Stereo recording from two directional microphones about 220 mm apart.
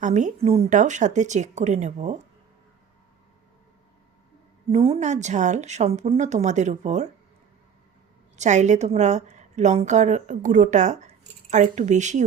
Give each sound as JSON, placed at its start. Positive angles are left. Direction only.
{"t": 0.0, "sound": "a woman's voice", "side_deg": -35}
{"t": 4.7, "sound": "a woman's voice", "side_deg": -25}
{"t": 8.4, "sound": "a woman's voice", "side_deg": -30}